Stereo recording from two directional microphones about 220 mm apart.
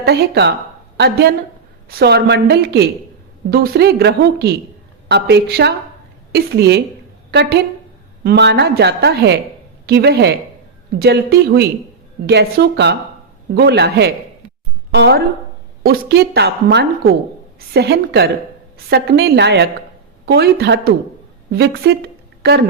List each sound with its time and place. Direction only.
0.0 s a woman's voice: 50° right (ahead or behind)